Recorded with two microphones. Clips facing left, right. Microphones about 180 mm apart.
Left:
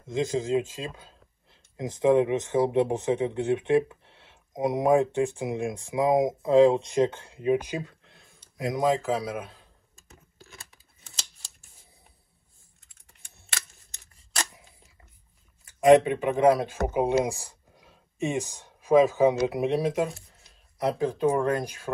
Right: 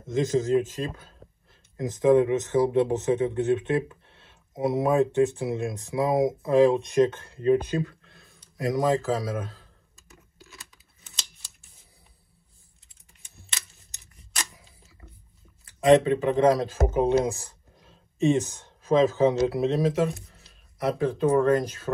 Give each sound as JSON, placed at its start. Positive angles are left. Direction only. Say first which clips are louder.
{"t": 0.1, "sound": "speech", "louder": "right 3 dB", "side_deg": 15}
{"t": 10.0, "sound": "tearing", "louder": "even", "side_deg": 30}
{"t": 14.1, "sound": "camera", "louder": "left 3 dB", "side_deg": 30}
{"t": 15.8, "sound": "speech", "louder": "left 1 dB", "side_deg": 15}
{"t": 17.1, "sound": "a sound", "louder": "right 2 dB", "side_deg": 15}
{"t": 19.4, "sound": "speech", "louder": "right 2 dB", "side_deg": 15}